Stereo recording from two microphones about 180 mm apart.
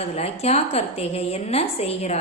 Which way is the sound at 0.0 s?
35° left (ahead or behind).